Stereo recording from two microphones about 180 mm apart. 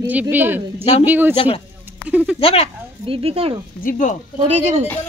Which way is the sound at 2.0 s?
5° right (ahead or behind).